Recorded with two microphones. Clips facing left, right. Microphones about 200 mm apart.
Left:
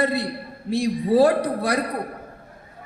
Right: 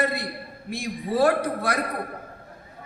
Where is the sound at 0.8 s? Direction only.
35° left (ahead or behind).